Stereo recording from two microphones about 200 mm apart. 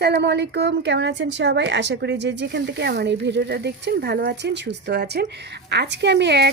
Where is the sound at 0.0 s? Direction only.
60° right (ahead or behind).